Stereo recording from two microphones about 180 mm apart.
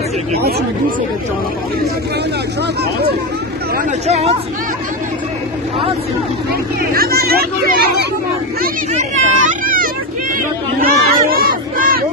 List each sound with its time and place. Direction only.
4.1 s speech: 35° right (ahead or behind)
6.9 s speech: 55° right (ahead or behind)
8.9 s speech: 45° right (ahead or behind)
10.8 s crowd: 55° right (ahead or behind)